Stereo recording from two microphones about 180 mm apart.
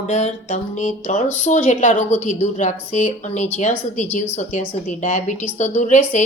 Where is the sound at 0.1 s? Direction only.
40° left (ahead or behind).